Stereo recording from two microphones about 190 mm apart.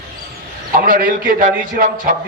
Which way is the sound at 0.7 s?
50° right (ahead or behind).